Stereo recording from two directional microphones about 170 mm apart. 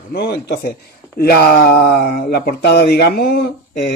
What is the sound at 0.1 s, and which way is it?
Speech, 75° left (ahead or behind).